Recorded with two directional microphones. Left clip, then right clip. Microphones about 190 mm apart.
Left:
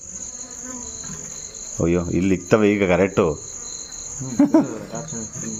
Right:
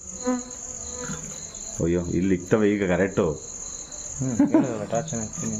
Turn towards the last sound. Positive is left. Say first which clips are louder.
# left 4 dB
turn(degrees=25)  # may be behind; listen again after turning